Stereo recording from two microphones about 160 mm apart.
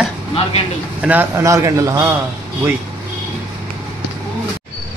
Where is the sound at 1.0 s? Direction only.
10° right (ahead or behind).